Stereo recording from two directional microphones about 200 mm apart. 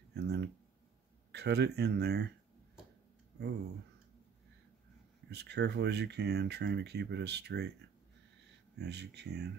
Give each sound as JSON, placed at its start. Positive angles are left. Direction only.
{"t": 0.1, "sound": "a sound", "side_deg": -55}
{"t": 1.3, "sound": "speech", "side_deg": -55}
{"t": 5.3, "sound": "speech", "side_deg": -55}
{"t": 8.7, "sound": "speech", "side_deg": -55}